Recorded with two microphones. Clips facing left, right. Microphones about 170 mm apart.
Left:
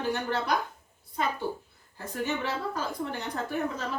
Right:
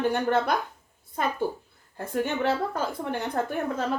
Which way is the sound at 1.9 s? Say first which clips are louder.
Right 4 dB; 55° right (ahead or behind).